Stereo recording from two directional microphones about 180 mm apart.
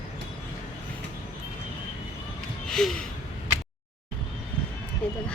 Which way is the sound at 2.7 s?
5° left (ahead or behind).